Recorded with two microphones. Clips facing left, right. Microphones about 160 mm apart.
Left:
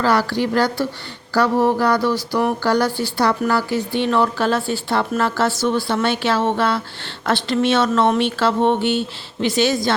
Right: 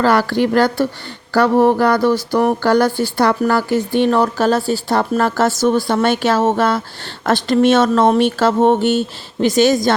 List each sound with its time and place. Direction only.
0.0 s speech: 50° right (ahead or behind)